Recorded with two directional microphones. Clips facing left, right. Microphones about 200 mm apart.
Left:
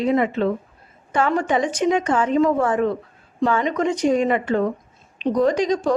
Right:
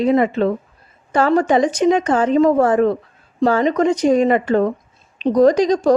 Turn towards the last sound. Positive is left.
turn(degrees=-35)  # may be behind; listen again after turning